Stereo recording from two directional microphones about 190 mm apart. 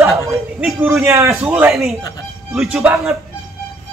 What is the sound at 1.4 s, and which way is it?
Speech, 5° right (ahead or behind).